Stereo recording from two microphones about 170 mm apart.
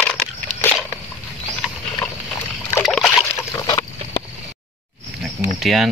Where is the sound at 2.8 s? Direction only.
Centre (ahead or behind).